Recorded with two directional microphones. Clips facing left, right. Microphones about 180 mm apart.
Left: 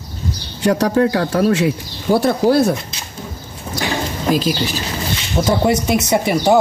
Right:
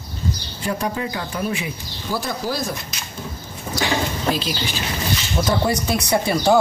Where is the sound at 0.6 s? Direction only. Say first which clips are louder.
Left 11 dB; 85° left; by 2.7 s 60° left (ahead or behind).